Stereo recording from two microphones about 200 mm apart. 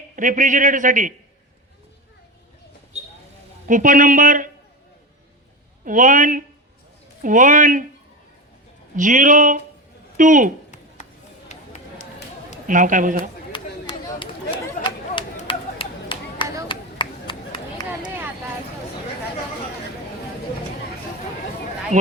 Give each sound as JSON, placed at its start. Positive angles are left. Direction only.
{"t": 0.2, "sound": "a man's voice", "side_deg": -40}
{"t": 3.7, "sound": "a man's voice", "side_deg": -40}
{"t": 5.8, "sound": "a man's voice", "side_deg": -40}
{"t": 9.0, "sound": "a man's voice", "side_deg": -40}
{"t": 12.6, "sound": "a man's voice", "side_deg": -40}
{"t": 13.5, "sound": "a sound", "side_deg": 25}
{"t": 16.6, "sound": "chop", "side_deg": 25}